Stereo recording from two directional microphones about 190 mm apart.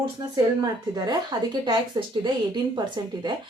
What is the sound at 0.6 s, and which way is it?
Speech, 20° right (ahead or behind).